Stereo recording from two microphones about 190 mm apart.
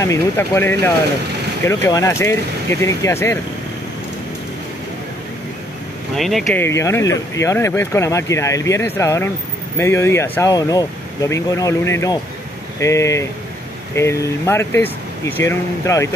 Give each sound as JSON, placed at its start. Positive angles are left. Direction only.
{"t": 0.0, "sound": "speech", "side_deg": 15}
{"t": 6.1, "sound": "speech", "side_deg": 0}
{"t": 6.6, "sound": "speech", "side_deg": 15}